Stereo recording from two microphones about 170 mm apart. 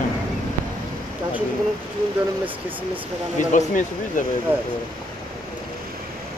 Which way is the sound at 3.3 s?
50° left (ahead or behind).